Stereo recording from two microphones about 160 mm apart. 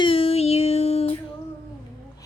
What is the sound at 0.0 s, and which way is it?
Music, 35° left (ahead or behind).